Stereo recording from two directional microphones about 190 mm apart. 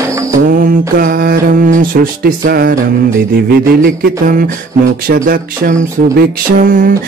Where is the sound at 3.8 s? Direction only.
50° right (ahead or behind).